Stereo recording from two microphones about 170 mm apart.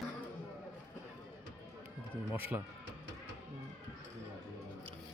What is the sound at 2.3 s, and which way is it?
Speech, 10° right (ahead or behind).